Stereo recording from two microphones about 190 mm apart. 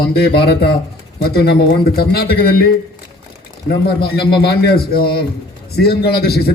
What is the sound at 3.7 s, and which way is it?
A man's voice, 55° left (ahead or behind).